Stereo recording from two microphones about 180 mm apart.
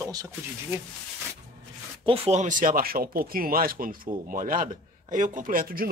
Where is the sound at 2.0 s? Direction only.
35° right (ahead or behind).